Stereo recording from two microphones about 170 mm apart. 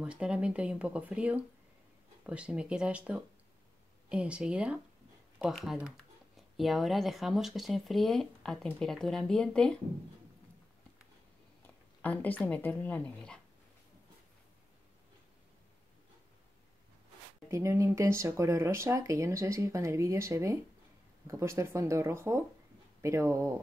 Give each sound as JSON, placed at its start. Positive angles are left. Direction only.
{"t": 0.0, "sound": "speech", "side_deg": -5}
{"t": 12.0, "sound": "speech", "side_deg": 10}
{"t": 17.5, "sound": "speech", "side_deg": -15}